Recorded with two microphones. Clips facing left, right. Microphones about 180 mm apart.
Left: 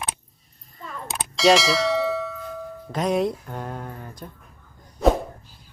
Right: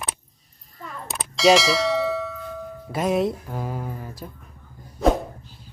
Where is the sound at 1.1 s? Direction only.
Centre (ahead or behind).